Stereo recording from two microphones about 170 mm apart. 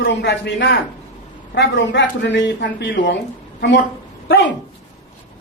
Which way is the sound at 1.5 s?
90° left.